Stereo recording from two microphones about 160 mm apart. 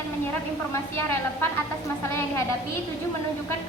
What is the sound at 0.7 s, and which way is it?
Speech, 15° left (ahead or behind).